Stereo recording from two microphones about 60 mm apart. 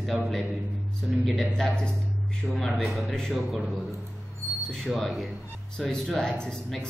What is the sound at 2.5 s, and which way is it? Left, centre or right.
A man's voice, centre.